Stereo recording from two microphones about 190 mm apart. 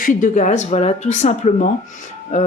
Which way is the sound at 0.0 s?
45° left (ahead or behind).